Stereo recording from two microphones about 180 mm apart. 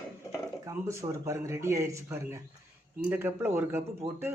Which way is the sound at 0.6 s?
15° right (ahead or behind).